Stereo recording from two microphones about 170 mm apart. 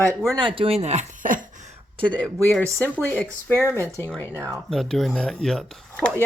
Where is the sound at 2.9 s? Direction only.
10° left (ahead or behind).